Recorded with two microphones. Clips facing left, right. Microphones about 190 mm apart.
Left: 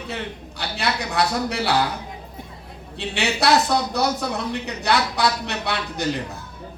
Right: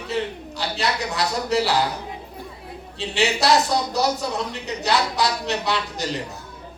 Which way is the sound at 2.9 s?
60° left (ahead or behind).